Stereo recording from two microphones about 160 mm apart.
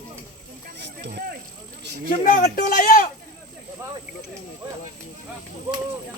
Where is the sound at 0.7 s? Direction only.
90° right; by 1.3 s 70° right (ahead or behind).